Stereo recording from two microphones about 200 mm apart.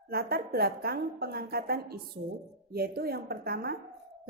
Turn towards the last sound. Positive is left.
turn(degrees=-50)  # may be behind; listen again after turning